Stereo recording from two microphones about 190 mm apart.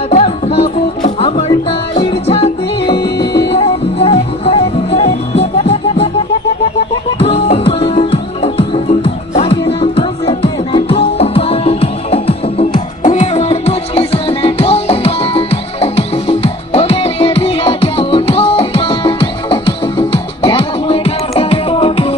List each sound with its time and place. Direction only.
0.1 s music: 35° left (ahead or behind)
7.2 s music: 30° left (ahead or behind)